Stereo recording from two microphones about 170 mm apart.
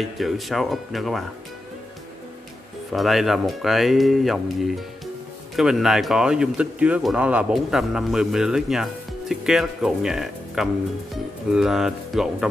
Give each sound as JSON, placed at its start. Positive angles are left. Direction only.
{"t": 0.0, "sound": "speech", "side_deg": 0}
{"t": 2.9, "sound": "speech", "side_deg": 0}